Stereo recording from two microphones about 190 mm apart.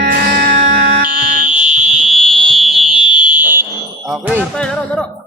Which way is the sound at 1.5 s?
5° right (ahead or behind).